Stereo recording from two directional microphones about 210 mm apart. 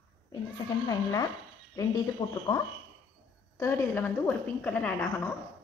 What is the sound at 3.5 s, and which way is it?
A woman's voice, 15° left (ahead or behind).